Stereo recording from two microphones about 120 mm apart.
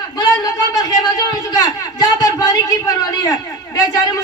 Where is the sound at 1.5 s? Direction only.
30° left (ahead or behind).